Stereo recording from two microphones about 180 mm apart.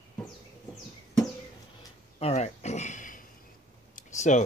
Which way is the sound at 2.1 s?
35° left (ahead or behind).